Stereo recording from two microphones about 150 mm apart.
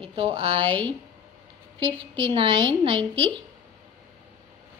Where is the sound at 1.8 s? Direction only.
35° right (ahead or behind).